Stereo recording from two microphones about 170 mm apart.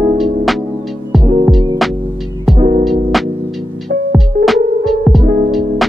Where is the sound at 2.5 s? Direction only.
45° right (ahead or behind).